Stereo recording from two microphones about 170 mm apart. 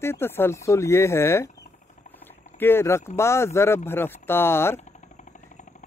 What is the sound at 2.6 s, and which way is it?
Speech, 15° left (ahead or behind).